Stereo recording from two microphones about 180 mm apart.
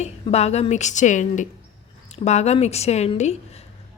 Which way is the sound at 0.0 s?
35° left (ahead or behind).